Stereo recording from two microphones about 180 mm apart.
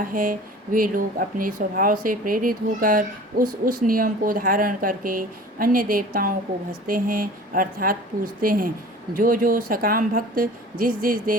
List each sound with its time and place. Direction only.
0.0 s speech: 50° right (ahead or behind)